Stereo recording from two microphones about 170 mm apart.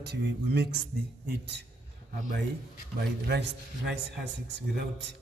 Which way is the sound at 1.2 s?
90° right.